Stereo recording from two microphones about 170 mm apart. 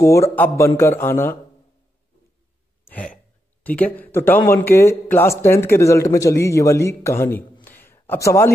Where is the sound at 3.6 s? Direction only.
10° left (ahead or behind).